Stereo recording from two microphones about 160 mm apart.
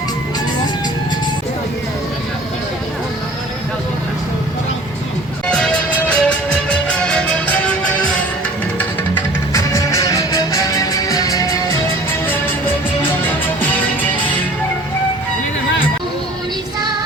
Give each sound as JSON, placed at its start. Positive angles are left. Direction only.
{"t": 5.5, "sound": "music", "side_deg": 5}
{"t": 9.1, "sound": "music", "side_deg": 20}